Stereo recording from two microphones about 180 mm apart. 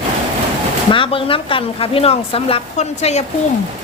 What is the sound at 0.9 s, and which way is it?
A woman's voice, 30° left (ahead or behind).